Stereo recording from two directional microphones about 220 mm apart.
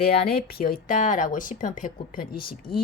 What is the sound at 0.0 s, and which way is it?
Speech, 45° left (ahead or behind).